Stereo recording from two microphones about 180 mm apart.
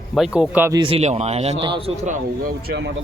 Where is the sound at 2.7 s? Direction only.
70° right (ahead or behind).